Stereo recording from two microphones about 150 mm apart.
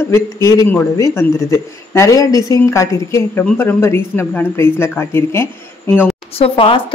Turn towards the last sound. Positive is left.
turn(degrees=40)  # may be behind; listen again after turning